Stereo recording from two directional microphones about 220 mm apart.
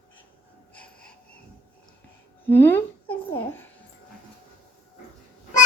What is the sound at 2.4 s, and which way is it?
Speech, 10° left (ahead or behind).